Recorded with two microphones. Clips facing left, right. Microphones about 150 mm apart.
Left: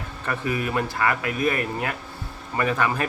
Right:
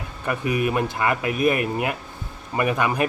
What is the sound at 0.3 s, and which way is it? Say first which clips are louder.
Speech: right 3 dB; 15° right (ahead or behind).